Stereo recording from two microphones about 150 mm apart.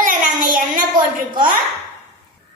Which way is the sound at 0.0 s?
65° right (ahead or behind).